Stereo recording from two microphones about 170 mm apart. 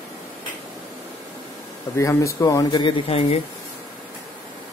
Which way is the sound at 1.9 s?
20° left (ahead or behind).